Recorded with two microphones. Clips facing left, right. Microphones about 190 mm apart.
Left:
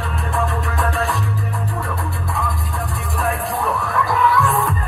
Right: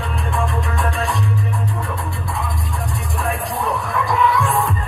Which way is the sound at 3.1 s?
Centre (ahead or behind).